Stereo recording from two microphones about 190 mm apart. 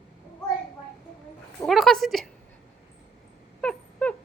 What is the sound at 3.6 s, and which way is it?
Dog, 5° left (ahead or behind).